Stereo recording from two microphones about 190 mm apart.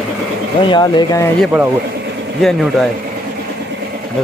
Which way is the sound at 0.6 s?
25° left (ahead or behind).